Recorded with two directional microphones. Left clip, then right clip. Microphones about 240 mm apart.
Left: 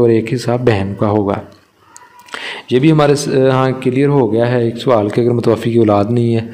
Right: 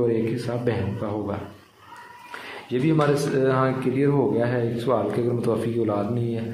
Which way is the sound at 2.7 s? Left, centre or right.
Left.